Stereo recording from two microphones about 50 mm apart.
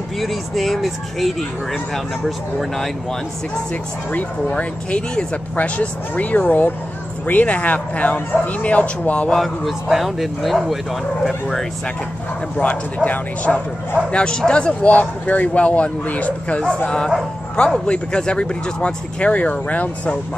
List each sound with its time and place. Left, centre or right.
0.2 s speech: centre
2.8 s speech: centre
4.1 s speech: left
9.7 s speech: centre
12.5 s speech: left
14.1 s speech: centre
16.6 s speech: centre